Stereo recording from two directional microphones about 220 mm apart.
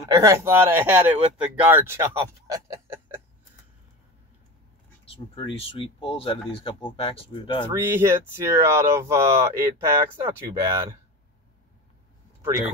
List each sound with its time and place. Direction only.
0.1 s speech: 15° right (ahead or behind)
5.1 s speech: 25° left (ahead or behind)
7.6 s speech: 10° right (ahead or behind)
12.4 s speech: 10° right (ahead or behind)